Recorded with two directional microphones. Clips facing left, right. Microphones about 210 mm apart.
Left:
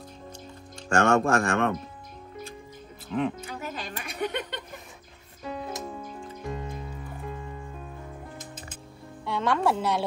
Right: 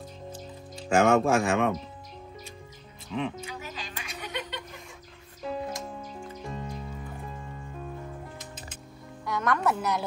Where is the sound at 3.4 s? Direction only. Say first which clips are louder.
Left 3 dB; 55° left (ahead or behind).